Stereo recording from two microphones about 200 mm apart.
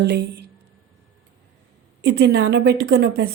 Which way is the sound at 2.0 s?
55° right (ahead or behind).